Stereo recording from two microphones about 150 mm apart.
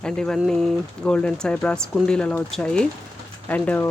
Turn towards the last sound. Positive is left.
turn(degrees=10)  # may be behind; listen again after turning